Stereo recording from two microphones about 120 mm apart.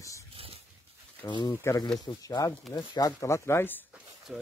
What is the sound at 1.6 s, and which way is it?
Speech, 30° left (ahead or behind).